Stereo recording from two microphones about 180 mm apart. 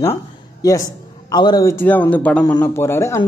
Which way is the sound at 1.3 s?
25° left (ahead or behind).